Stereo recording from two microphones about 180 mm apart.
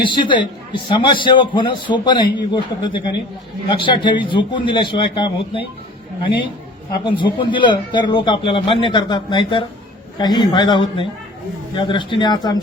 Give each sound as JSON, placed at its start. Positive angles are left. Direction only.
{"t": 0.0, "sound": "a man's voice", "side_deg": 25}
{"t": 7.0, "sound": "a man's voice", "side_deg": 25}